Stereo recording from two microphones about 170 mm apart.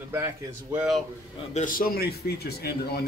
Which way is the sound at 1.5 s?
50° left (ahead or behind).